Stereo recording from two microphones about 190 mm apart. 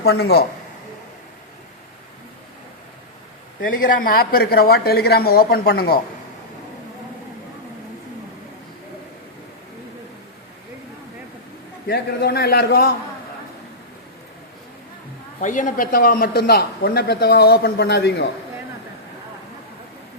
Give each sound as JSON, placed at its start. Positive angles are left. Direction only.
{"t": 0.0, "sound": "speech", "side_deg": 60}
{"t": 3.6, "sound": "speech", "side_deg": 45}
{"t": 11.9, "sound": "speech", "side_deg": 55}
{"t": 15.4, "sound": "speech", "side_deg": 40}